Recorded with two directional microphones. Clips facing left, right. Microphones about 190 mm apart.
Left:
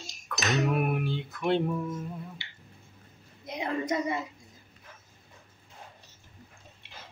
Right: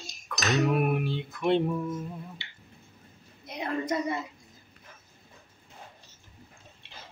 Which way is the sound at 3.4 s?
20° left (ahead or behind).